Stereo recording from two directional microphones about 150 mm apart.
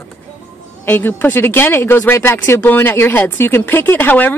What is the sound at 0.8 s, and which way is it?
Speech, 15° left (ahead or behind).